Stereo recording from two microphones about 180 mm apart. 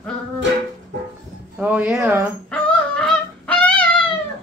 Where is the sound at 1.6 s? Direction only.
10° right (ahead or behind).